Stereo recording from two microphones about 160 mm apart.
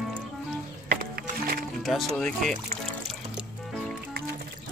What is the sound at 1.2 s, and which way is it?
Music, 70° right (ahead or behind).